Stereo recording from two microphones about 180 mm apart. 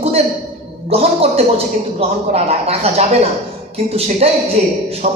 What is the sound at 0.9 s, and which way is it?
A man's voice, 35° right (ahead or behind).